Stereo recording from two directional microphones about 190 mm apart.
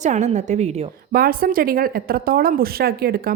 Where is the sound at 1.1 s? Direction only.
50° right (ahead or behind).